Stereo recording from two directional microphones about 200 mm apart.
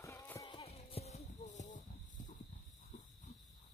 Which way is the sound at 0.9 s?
35° left (ahead or behind).